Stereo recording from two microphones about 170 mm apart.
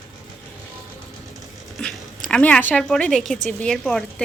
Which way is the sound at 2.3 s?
10° left (ahead or behind).